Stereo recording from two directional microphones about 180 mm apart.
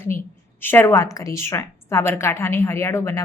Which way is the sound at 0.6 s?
10° left (ahead or behind).